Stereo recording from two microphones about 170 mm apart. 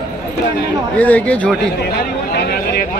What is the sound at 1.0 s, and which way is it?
Speech, 10° left (ahead or behind).